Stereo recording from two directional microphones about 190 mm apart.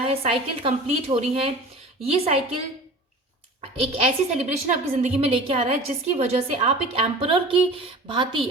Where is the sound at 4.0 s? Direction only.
40° right (ahead or behind).